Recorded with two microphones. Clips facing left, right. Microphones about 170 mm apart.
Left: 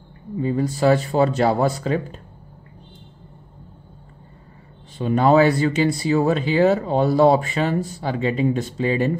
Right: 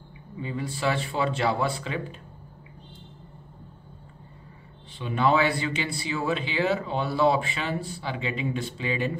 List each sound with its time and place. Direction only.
0.4 s speech: 45° left (ahead or behind)
4.9 s speech: 45° left (ahead or behind)